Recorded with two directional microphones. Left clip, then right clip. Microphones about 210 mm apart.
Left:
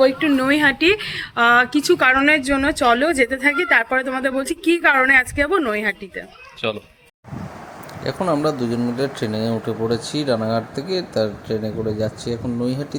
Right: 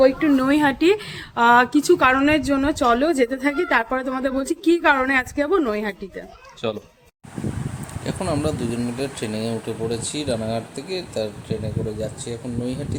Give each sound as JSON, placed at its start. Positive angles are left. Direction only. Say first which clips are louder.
{"t": 0.1, "sound": "a woman's voice", "louder": "left 1 dB", "side_deg": 40}
{"t": 0.3, "sound": "a woman's voice", "louder": "left 2 dB", "side_deg": -15}
{"t": 6.6, "sound": "speech", "louder": "left 2 dB", "side_deg": 5}
{"t": 8.0, "sound": "speech", "louder": "left 5 dB", "side_deg": 10}